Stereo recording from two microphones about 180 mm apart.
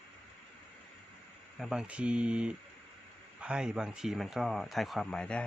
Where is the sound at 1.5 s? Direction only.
5° right (ahead or behind).